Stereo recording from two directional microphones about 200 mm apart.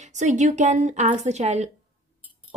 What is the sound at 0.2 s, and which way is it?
Speech, 35° right (ahead or behind).